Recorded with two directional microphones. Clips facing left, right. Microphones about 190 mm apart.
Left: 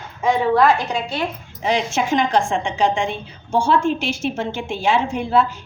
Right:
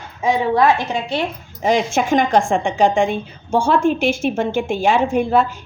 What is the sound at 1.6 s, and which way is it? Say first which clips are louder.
A woman's voice: right 3 dB; 50° right (ahead or behind).